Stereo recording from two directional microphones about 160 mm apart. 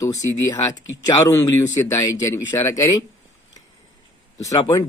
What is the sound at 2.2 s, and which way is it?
Speech, 20° left (ahead or behind).